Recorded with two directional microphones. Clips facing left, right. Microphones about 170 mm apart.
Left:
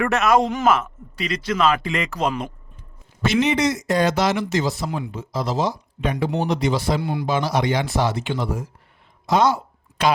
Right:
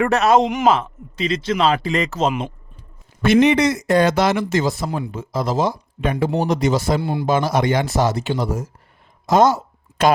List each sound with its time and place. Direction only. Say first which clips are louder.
0.0 s speech: right 3 dB; 30° right (ahead or behind)
0.3 s a man's voice: right 2 dB; 20° right (ahead or behind); by 2.1 s 35° right (ahead or behind)
2.1 s a man's voice: right 3 dB; 25° right (ahead or behind)
3.2 s speech: right 5 dB; 55° right (ahead or behind)
4.9 s speech: right 2 dB; 35° right (ahead or behind)
5.1 s speech: right 4 dB; 50° right (ahead or behind)
7.0 s a man's voice: right 2 dB; 30° right (ahead or behind)
7.3 s speech: right 4 dB; 50° right (ahead or behind)
9.2 s a sound: right 4 dB; 45° right (ahead or behind)